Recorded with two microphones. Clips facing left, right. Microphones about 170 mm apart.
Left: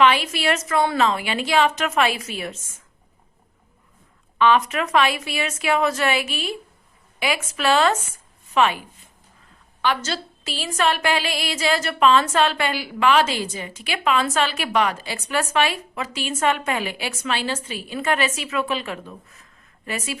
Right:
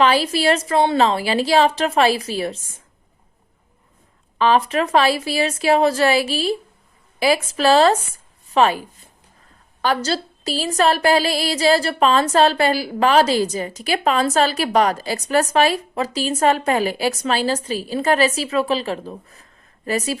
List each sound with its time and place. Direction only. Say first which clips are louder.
0.0 s a woman's voice: right 2 dB; 35° right (ahead or behind)
4.4 s a woman's voice: right 2 dB; 35° right (ahead or behind)
9.8 s a woman's voice: right 3 dB; 35° right (ahead or behind)